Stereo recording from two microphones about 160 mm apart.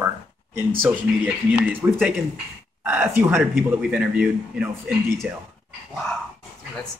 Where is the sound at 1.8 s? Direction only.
15° right (ahead or behind).